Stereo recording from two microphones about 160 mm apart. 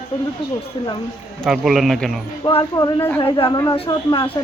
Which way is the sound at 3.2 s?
30° left (ahead or behind).